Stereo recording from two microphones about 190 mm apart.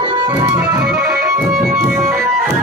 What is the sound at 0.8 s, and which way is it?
Music, centre (ahead or behind).